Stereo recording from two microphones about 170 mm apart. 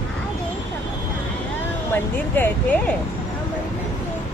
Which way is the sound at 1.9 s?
15° left (ahead or behind).